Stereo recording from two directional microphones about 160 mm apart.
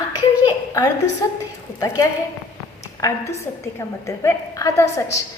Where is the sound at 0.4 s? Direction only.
25° left (ahead or behind).